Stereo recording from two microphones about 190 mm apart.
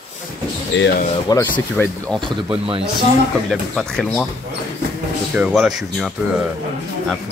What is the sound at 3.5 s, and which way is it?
Speech, centre (ahead or behind).